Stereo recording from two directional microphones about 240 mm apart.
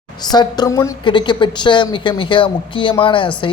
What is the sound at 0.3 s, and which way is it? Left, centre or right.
A woman's voice, centre.